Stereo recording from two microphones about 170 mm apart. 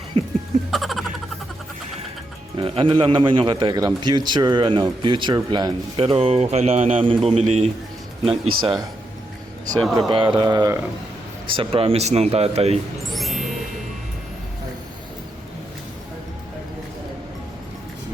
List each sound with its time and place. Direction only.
0.1 s speech: 30° right (ahead or behind)
0.7 s a sound: centre (ahead or behind)
2.6 s a man's voice: 30° right (ahead or behind)
10.1 s speech: 30° right (ahead or behind)
11.5 s a man's voice: 30° right (ahead or behind)
13.1 s music: centre (ahead or behind)